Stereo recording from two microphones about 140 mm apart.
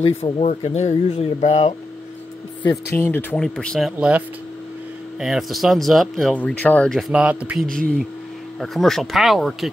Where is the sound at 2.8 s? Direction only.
15° left (ahead or behind); by 6.4 s centre (ahead or behind).